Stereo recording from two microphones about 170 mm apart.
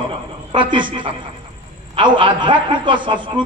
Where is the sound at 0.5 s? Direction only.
30° right (ahead or behind).